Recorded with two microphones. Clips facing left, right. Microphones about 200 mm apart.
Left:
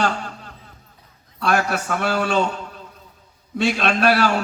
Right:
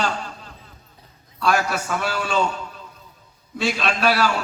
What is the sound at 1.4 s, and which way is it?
Speech, 55° left (ahead or behind).